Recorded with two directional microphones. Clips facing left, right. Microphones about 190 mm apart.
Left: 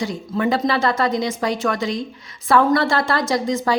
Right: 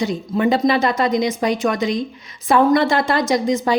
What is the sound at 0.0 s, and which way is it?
A woman's voice, 20° right (ahead or behind).